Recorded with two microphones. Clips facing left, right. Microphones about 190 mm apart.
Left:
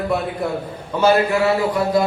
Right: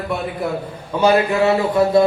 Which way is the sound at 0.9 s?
15° right (ahead or behind).